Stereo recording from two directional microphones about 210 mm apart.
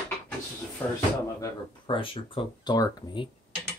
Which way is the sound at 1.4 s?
20° left (ahead or behind).